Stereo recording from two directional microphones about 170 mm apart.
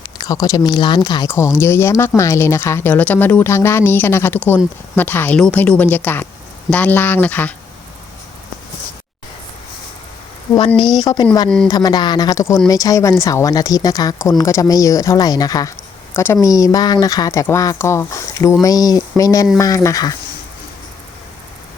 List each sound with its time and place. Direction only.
0.2 s speech: 20° left (ahead or behind)
10.7 s speech: centre (ahead or behind)
11.0 s speech: 20° left (ahead or behind)
11.4 s speech: 5° left (ahead or behind)
11.7 s speech: 25° left (ahead or behind)